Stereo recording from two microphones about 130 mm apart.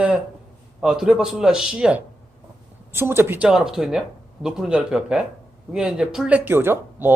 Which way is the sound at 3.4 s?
5° right (ahead or behind).